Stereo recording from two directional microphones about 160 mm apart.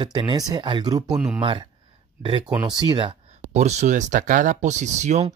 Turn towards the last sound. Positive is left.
turn(degrees=-45)  # may be behind; listen again after turning